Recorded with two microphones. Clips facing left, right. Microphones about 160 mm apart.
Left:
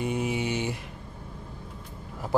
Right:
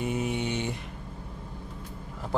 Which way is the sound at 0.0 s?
Centre (ahead or behind).